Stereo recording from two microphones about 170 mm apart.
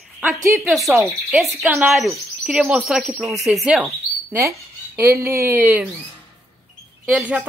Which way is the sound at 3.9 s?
15° right (ahead or behind).